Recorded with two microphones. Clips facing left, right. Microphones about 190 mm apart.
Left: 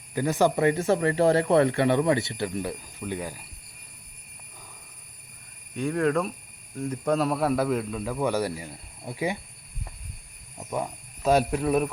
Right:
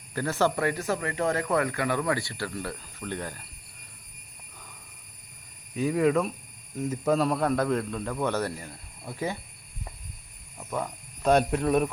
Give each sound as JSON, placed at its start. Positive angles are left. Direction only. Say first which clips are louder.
{"t": 0.1, "sound": "speech", "louder": "left 3 dB", "side_deg": 15}
{"t": 5.7, "sound": "a man's voice", "louder": "right 1 dB", "side_deg": -5}
{"t": 10.6, "sound": "speech", "louder": "left 2 dB", "side_deg": 15}
{"t": 11.2, "sound": "a man's voice", "louder": "even", "side_deg": 5}